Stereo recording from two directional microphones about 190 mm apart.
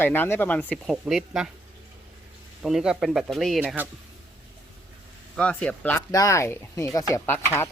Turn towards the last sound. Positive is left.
turn(degrees=10)  # may be behind; listen again after turning